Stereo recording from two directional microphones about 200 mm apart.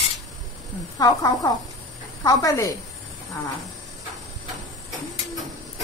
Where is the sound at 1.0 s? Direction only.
15° left (ahead or behind).